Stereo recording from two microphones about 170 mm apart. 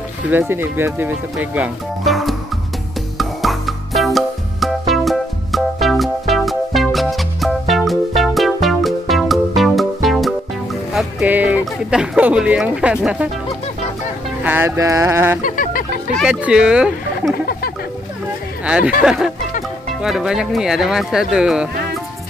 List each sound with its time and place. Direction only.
0.3 s speech: 15° right (ahead or behind)
3.2 s music: centre (ahead or behind)
10.9 s speech: centre (ahead or behind)
14.4 s speech: 10° right (ahead or behind)
15.4 s a sound: 55° left (ahead or behind)
16.2 s speech: 5° right (ahead or behind)
18.7 s speech: 5° right (ahead or behind)